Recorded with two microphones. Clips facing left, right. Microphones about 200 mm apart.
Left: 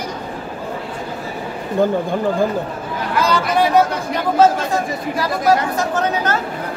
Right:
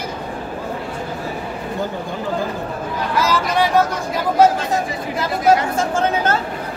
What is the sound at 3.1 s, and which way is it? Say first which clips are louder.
Speech: left 2 dB; 5° right (ahead or behind).